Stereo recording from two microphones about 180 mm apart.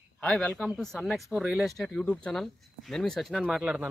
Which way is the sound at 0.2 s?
5° left (ahead or behind).